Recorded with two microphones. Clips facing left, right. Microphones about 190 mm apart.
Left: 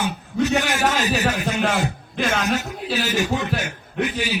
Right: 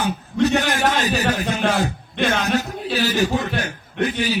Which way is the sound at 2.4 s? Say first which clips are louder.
Right 2 dB; 35° right (ahead or behind).